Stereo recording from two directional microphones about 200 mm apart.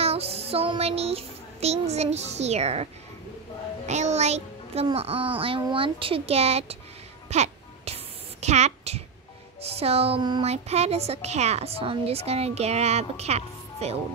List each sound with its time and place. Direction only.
0.0 s child singing: 30° right (ahead or behind)
3.8 s a child's voice: 35° right (ahead or behind)
7.2 s a sound: 35° right (ahead or behind)
9.8 s speech: 30° right (ahead or behind)